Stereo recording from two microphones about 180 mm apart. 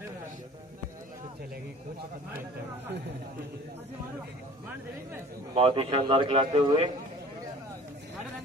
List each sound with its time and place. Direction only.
5.5 s a man's voice: 30° right (ahead or behind)